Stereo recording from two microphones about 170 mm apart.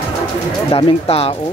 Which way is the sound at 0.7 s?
35° left (ahead or behind).